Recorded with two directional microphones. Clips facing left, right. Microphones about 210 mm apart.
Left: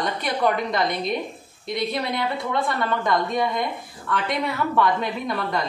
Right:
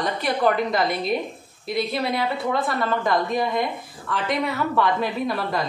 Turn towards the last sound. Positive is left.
turn(degrees=0)  # may be behind; listen again after turning